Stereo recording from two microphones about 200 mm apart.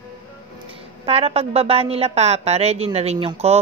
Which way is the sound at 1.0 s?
30° right (ahead or behind).